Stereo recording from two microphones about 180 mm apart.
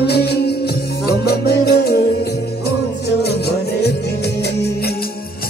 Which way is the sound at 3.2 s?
65° left (ahead or behind).